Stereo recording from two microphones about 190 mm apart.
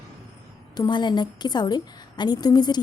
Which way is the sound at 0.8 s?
25° left (ahead or behind).